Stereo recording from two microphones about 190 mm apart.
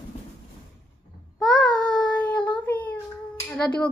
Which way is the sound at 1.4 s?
5° left (ahead or behind).